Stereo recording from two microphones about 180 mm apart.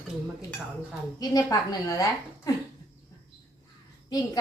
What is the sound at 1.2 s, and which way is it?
Speech, 20° left (ahead or behind).